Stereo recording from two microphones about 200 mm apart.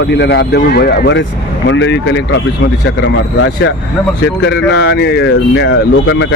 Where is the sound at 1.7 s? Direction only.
65° left (ahead or behind).